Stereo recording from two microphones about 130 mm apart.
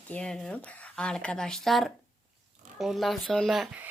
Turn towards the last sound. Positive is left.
turn(degrees=0)  # may be behind; listen again after turning